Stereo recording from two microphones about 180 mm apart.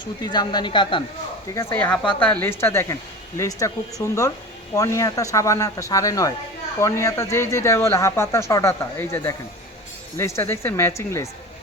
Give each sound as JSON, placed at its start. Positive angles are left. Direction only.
{"t": 0.0, "sound": "speech", "side_deg": 25}
{"t": 1.5, "sound": "speech", "side_deg": 10}